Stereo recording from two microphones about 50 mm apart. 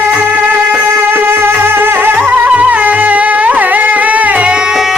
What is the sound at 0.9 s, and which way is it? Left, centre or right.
Music, right.